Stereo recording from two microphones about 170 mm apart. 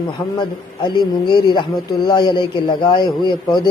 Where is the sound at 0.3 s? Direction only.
25° left (ahead or behind).